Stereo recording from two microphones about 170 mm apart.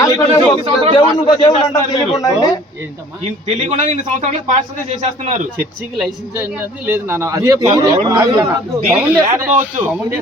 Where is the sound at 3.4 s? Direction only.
45° right (ahead or behind).